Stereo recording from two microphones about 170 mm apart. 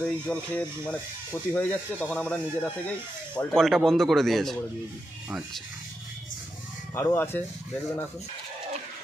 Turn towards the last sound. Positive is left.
turn(degrees=15)  # may be behind; listen again after turning